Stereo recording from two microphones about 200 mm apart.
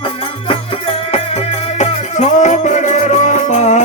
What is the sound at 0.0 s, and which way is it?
Music, 25° left (ahead or behind).